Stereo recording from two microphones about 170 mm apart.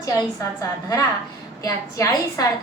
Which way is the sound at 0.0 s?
20° left (ahead or behind).